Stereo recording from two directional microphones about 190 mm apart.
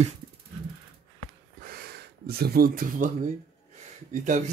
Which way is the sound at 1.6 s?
50° right (ahead or behind).